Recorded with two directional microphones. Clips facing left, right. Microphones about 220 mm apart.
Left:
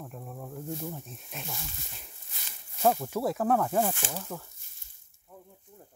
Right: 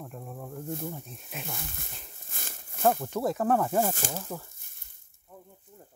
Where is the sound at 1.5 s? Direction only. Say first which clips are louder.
Right 2 dB; 55° right (ahead or behind).